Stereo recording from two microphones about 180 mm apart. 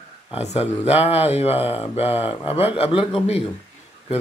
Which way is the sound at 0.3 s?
35° left (ahead or behind).